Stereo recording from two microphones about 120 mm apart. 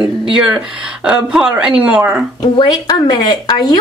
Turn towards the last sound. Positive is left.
turn(degrees=35)  # may be behind; listen again after turning